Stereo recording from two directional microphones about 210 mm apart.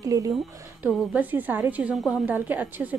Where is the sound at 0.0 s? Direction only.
15° right (ahead or behind).